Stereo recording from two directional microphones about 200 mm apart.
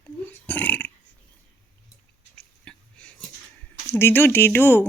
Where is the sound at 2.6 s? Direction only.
5° left (ahead or behind).